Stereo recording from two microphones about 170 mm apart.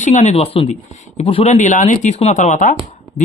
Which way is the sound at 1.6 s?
45° left (ahead or behind).